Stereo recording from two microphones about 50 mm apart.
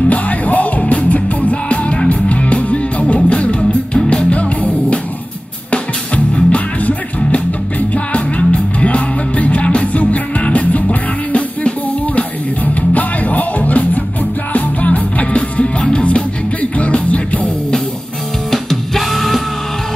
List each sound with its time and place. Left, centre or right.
0.1 s music: left
12.9 s music: left
18.5 s music: centre